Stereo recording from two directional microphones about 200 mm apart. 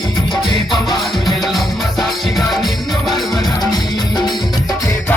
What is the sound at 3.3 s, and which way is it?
Music, 20° left (ahead or behind).